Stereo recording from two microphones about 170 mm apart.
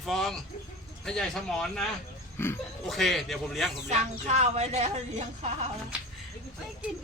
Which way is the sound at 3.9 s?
40° right (ahead or behind).